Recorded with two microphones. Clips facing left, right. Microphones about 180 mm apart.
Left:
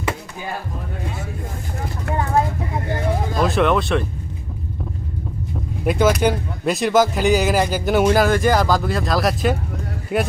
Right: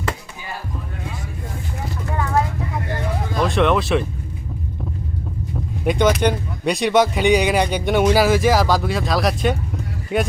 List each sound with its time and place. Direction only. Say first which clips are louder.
2.1 s speech: left 1 dB; 30° left (ahead or behind)
3.3 s speech: right 1 dB; centre (ahead or behind)
5.8 s speech: even; 5° left (ahead or behind)